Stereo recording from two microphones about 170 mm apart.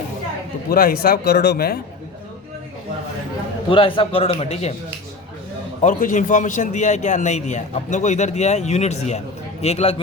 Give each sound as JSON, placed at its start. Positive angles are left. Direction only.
{"t": 0.7, "sound": "speech", "side_deg": 60}
{"t": 3.7, "sound": "a man's voice", "side_deg": 30}
{"t": 5.8, "sound": "a man's voice", "side_deg": 50}